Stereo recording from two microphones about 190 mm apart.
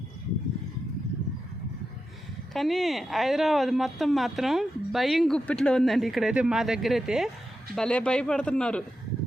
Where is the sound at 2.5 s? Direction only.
Centre (ahead or behind).